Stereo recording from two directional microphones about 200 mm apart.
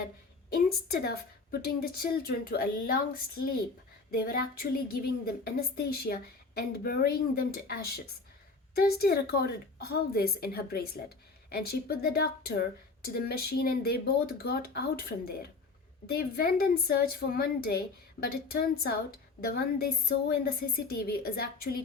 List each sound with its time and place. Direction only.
0.5 s a woman's voice: 50° left (ahead or behind)
4.1 s a woman's voice: 50° left (ahead or behind)